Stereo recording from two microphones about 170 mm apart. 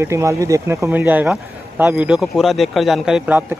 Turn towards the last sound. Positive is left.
turn(degrees=-5)  # may be behind; listen again after turning